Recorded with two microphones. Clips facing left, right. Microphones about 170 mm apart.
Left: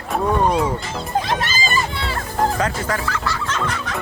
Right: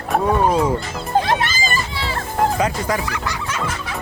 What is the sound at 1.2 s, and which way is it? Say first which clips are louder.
Music: right 4 dB; 50° right (ahead or behind).